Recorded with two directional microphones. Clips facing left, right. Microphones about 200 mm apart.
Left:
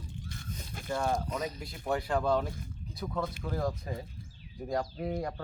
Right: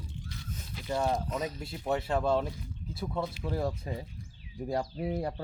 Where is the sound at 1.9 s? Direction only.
25° right (ahead or behind).